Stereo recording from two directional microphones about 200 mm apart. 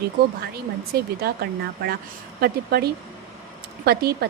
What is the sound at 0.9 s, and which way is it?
Speech, 50° right (ahead or behind).